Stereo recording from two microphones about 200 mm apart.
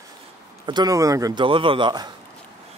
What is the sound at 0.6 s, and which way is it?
A man's voice, 20° right (ahead or behind).